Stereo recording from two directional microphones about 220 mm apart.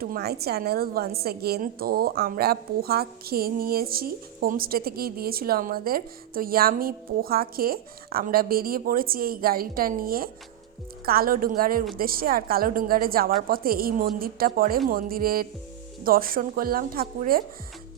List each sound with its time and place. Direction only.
0.0 s a woman's voice: 45° right (ahead or behind)